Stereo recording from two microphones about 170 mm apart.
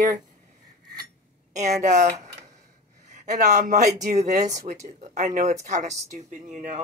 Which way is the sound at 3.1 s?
45° right (ahead or behind).